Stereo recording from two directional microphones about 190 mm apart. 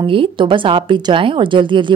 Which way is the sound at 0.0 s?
25° right (ahead or behind).